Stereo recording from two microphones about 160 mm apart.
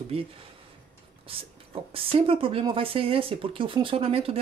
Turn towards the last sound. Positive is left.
turn(degrees=-35)  # may be behind; listen again after turning